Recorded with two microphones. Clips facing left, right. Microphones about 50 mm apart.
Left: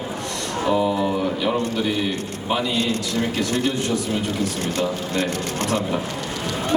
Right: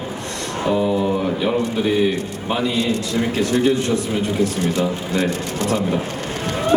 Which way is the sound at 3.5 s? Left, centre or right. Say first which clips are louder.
Right 7 dB; right.